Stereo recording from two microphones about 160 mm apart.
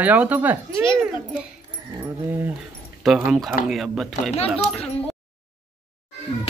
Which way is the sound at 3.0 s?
Centre (ahead or behind).